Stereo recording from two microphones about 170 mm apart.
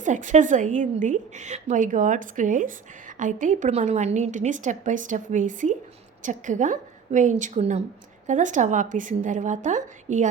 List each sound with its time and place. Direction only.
0.0 s a woman's voice: 45° right (ahead or behind)